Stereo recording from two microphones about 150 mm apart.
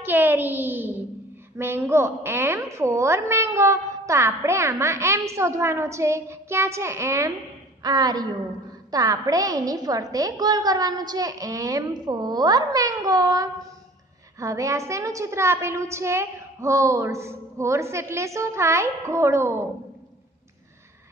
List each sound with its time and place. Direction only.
0.0 s a child's voice: 15° right (ahead or behind)